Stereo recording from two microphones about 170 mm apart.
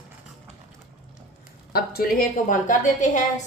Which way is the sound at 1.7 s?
60° left (ahead or behind).